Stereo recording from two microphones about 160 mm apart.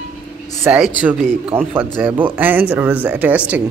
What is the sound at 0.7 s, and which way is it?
Speech, 10° right (ahead or behind).